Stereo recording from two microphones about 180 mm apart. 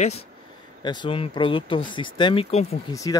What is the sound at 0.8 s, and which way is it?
Speech, 25° left (ahead or behind).